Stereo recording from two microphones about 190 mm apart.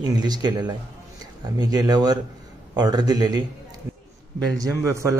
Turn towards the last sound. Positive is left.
turn(degrees=-15)  # may be behind; listen again after turning